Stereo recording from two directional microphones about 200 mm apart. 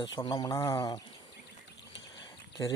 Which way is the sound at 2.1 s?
20° left (ahead or behind).